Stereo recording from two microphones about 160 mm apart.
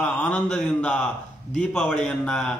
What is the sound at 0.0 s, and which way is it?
A man's voice, 5° left (ahead or behind).